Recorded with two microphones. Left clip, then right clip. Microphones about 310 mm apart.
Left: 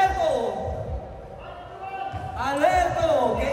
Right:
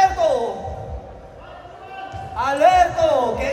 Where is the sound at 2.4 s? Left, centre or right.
Right.